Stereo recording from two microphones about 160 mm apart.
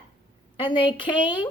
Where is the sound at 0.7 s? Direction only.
30° left (ahead or behind).